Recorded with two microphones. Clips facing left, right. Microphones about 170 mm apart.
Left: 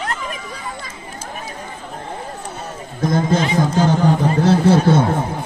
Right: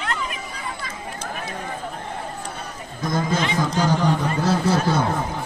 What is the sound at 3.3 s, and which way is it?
A man's voice, 25° left (ahead or behind).